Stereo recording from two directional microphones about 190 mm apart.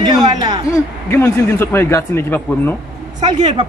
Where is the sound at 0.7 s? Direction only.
10° left (ahead or behind).